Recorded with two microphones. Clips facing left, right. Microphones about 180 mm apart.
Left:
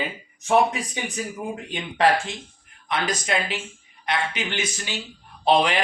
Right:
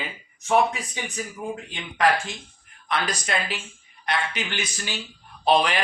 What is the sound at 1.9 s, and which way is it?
Speech, 30° left (ahead or behind).